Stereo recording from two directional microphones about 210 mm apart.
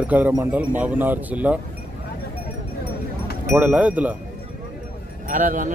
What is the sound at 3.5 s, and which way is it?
Speech, 10° right (ahead or behind).